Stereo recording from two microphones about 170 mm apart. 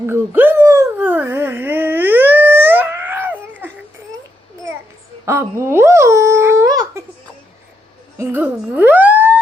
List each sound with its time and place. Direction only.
0.1 s dog: 10° right (ahead or behind)
5.2 s dog: 15° right (ahead or behind)
8.2 s a sound: 10° right (ahead or behind)